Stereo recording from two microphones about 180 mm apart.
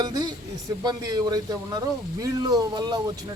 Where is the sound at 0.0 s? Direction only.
20° right (ahead or behind).